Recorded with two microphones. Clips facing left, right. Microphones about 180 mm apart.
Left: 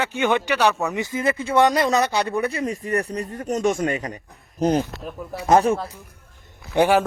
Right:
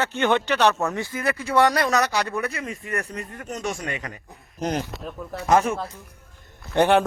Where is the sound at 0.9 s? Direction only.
20° left (ahead or behind).